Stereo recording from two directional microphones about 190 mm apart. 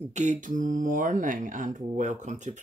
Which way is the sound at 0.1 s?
40° right (ahead or behind).